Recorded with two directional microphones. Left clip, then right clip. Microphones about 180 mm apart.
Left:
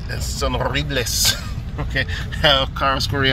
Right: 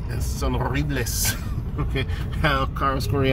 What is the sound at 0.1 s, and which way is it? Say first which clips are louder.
Speech: left 6 dB; centre (ahead or behind).